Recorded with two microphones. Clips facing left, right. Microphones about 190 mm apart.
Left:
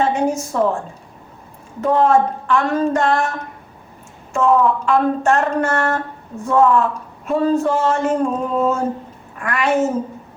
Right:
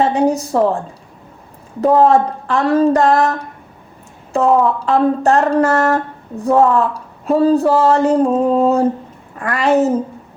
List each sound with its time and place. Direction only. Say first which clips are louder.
0.0 s a woman's voice: right 4 dB; 35° right (ahead or behind)
1.8 s speech: right 3 dB; 35° right (ahead or behind)